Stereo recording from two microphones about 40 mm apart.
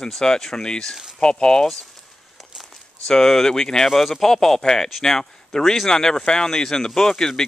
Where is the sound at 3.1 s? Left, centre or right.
Centre.